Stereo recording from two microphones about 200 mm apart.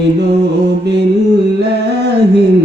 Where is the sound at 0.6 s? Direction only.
55° right (ahead or behind).